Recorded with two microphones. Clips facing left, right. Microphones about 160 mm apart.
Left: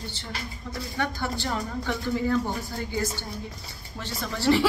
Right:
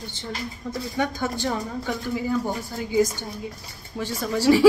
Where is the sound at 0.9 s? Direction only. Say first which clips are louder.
Right 3 dB; 15° right (ahead or behind).